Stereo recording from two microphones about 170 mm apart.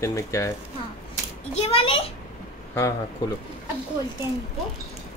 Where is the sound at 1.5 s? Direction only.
35° left (ahead or behind).